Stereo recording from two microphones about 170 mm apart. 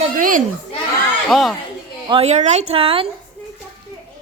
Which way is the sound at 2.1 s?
35° right (ahead or behind).